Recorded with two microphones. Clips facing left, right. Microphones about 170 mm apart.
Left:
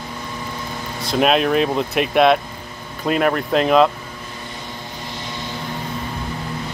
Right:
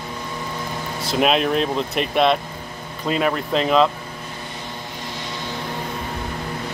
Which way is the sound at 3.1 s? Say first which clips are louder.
Left 3 dB; 55° left (ahead or behind).